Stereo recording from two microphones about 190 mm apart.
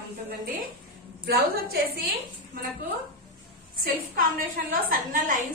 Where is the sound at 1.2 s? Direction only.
55° right (ahead or behind).